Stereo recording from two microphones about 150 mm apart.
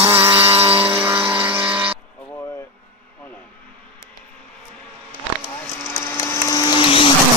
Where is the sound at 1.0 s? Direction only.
15° right (ahead or behind).